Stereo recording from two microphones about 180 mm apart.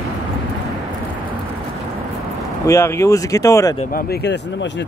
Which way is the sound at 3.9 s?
60° left (ahead or behind).